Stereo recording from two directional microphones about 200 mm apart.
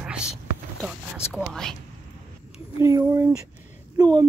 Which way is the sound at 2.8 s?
15° right (ahead or behind).